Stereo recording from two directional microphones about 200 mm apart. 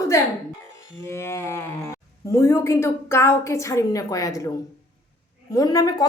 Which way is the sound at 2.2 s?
15° left (ahead or behind).